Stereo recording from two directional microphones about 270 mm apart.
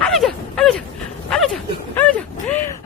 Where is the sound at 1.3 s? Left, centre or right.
Centre.